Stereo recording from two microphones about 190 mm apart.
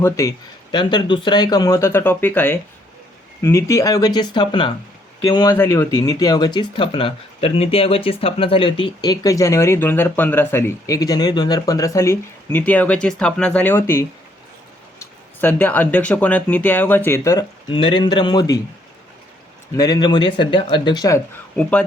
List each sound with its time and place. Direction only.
0.0 s speech: 15° left (ahead or behind)
19.7 s speech: 20° left (ahead or behind)
21.5 s speech: 5° left (ahead or behind)